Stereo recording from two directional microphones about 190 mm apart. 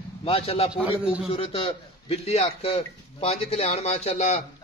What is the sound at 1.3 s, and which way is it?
A man's voice, 30° left (ahead or behind).